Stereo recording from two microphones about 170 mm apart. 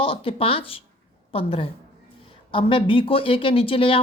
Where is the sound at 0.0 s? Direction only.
30° left (ahead or behind).